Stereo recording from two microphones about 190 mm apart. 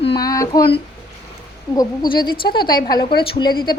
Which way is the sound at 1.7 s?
20° left (ahead or behind).